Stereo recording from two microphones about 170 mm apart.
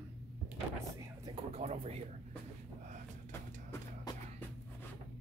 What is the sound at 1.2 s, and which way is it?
Speech, 35° right (ahead or behind).